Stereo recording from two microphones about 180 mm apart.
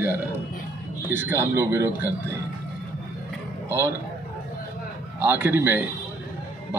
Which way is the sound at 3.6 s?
15° right (ahead or behind).